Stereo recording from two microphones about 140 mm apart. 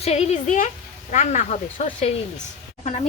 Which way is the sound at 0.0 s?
50° left (ahead or behind).